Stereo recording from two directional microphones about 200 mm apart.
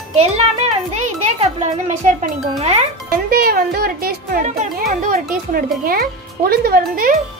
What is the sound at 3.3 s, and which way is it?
Speech, 50° right (ahead or behind).